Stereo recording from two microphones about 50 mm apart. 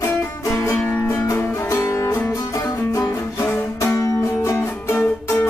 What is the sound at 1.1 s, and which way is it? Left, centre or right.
Music, left.